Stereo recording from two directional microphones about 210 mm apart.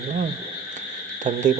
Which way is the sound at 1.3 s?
35° right (ahead or behind).